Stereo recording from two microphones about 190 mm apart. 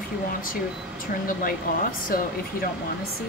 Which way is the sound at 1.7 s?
45° left (ahead or behind).